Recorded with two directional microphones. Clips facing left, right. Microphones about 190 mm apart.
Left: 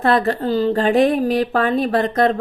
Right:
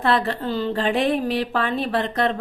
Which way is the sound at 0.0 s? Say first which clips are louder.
Left 4 dB; 45° left (ahead or behind).